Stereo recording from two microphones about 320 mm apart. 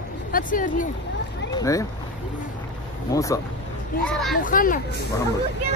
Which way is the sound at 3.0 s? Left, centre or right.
Centre.